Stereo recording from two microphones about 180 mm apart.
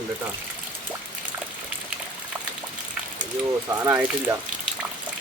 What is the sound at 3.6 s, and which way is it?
Speech, 15° right (ahead or behind).